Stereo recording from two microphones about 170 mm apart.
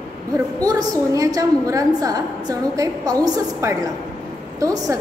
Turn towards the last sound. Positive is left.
turn(degrees=-20)  # may be behind; listen again after turning